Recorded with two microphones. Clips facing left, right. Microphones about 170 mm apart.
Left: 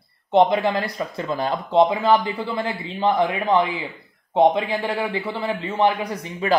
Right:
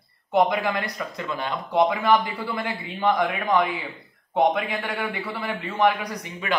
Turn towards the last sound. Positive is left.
turn(degrees=30)  # may be behind; listen again after turning